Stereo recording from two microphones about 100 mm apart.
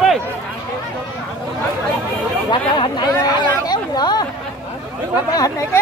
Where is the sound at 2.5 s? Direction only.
50° left (ahead or behind).